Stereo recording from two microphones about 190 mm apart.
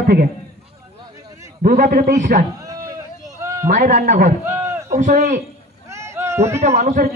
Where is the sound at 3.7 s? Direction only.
40° right (ahead or behind).